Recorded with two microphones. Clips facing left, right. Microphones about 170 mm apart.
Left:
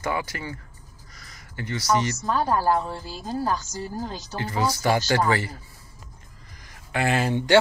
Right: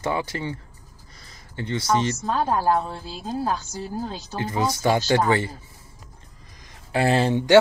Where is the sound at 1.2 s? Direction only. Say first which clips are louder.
Right 3 dB; 25° right (ahead or behind).